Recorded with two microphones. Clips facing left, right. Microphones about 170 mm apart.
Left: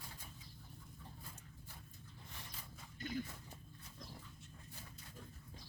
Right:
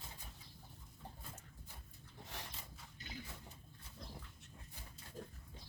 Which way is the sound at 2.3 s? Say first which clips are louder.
Right 6 dB; 75° right (ahead or behind).